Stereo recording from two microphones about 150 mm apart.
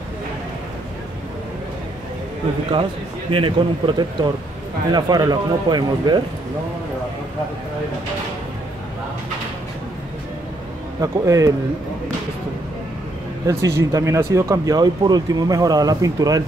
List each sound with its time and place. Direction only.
3.3 s a man's voice: 35° right (ahead or behind)
11.0 s speech: 20° right (ahead or behind)
13.5 s speech: 20° right (ahead or behind)